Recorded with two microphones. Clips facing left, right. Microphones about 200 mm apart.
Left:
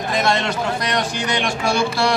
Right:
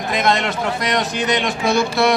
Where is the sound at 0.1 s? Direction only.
20° right (ahead or behind).